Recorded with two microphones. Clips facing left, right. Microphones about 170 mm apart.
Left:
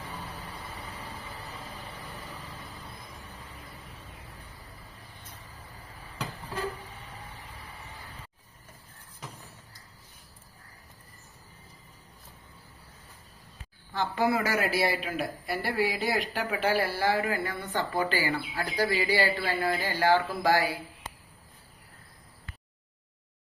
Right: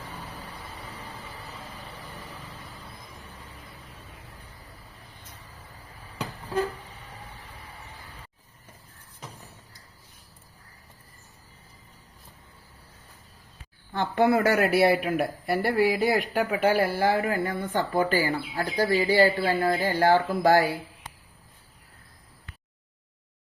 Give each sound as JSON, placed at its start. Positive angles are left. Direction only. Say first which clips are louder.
{"t": 13.9, "sound": "speech", "louder": "right 5 dB", "side_deg": -55}
{"t": 17.4, "sound": "speech", "louder": "right 4 dB", "side_deg": -25}
{"t": 18.1, "sound": "speech", "louder": "right 4 dB", "side_deg": -40}
{"t": 19.5, "sound": "speech", "louder": "right 4 dB", "side_deg": -35}
{"t": 19.8, "sound": "speech", "louder": "right 2 dB", "side_deg": -50}